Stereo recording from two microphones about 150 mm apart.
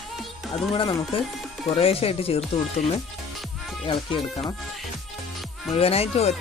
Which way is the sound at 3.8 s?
35° left (ahead or behind).